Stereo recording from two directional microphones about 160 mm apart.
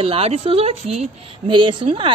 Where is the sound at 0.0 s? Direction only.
40° right (ahead or behind).